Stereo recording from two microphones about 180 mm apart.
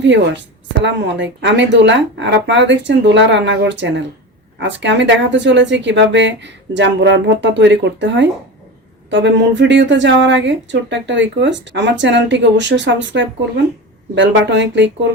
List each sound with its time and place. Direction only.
0.0 s speech: 85° right